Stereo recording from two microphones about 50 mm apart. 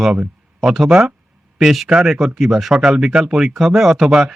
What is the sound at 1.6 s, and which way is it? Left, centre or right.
Speech, centre.